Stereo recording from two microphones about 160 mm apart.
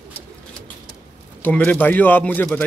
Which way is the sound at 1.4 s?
10° left (ahead or behind).